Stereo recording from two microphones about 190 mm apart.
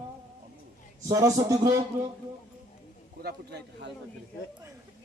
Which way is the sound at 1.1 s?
15° right (ahead or behind).